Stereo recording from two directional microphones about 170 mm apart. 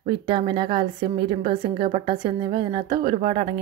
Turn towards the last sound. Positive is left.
turn(degrees=-35)  # may be behind; listen again after turning